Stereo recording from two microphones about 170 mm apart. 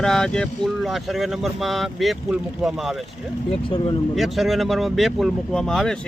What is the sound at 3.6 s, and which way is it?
Speech, 30° left (ahead or behind).